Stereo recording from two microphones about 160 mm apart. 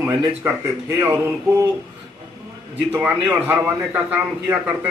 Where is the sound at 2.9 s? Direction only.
5° right (ahead or behind).